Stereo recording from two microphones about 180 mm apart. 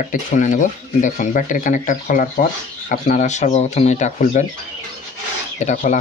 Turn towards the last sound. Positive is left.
turn(degrees=45)  # may be behind; listen again after turning